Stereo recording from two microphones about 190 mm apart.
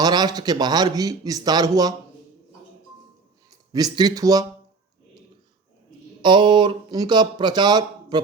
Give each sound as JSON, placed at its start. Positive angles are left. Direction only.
{"t": 0.0, "sound": "speech", "side_deg": -20}
{"t": 3.5, "sound": "speech", "side_deg": -20}
{"t": 6.2, "sound": "speech", "side_deg": -25}